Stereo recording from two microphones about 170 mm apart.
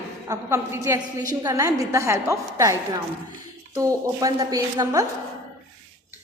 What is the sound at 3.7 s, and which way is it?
A woman's voice, 20° right (ahead or behind).